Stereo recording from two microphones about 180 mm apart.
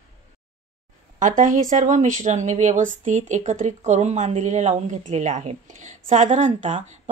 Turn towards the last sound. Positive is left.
turn(degrees=-40)  # may be behind; listen again after turning